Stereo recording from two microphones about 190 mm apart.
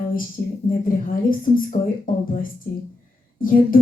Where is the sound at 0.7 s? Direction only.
45° left (ahead or behind).